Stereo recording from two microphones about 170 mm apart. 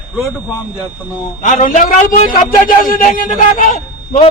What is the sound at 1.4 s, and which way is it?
Speech, 45° left (ahead or behind).